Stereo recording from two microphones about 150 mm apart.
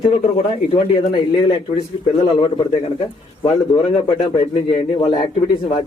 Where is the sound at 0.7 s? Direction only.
35° left (ahead or behind).